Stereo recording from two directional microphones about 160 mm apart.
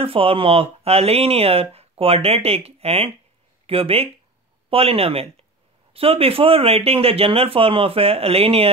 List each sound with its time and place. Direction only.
0.0 s speech: 35° right (ahead or behind)